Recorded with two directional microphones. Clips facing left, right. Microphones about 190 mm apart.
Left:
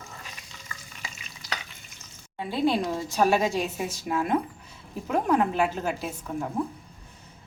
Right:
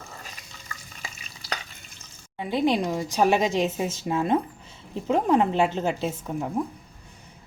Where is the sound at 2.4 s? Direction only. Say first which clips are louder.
Right 2 dB; 15° right (ahead or behind).